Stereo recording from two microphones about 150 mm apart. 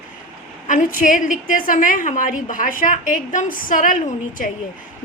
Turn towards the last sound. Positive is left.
turn(degrees=65)  # may be behind; listen again after turning